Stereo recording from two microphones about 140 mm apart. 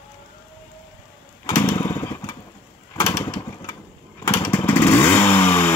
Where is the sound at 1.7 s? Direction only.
20° left (ahead or behind).